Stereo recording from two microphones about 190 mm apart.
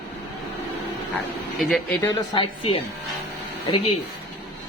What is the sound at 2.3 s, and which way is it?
Speech, 25° left (ahead or behind).